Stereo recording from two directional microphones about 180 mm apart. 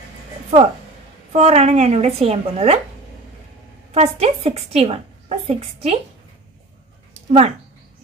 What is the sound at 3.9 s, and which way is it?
A woman's voice, 35° right (ahead or behind).